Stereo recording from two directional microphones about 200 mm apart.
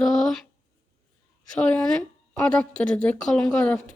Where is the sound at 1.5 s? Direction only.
5° left (ahead or behind).